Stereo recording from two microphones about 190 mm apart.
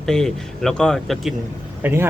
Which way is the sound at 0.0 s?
Centre (ahead or behind).